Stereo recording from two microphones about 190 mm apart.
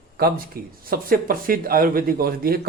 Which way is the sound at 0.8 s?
50° right (ahead or behind).